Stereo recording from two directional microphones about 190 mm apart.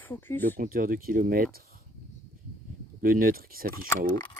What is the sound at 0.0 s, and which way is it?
Speech, 10° left (ahead or behind).